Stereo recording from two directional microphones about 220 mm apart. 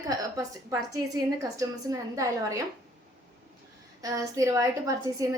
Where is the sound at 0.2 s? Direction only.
15° right (ahead or behind).